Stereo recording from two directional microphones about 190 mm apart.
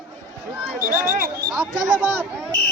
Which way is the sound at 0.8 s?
45° right (ahead or behind).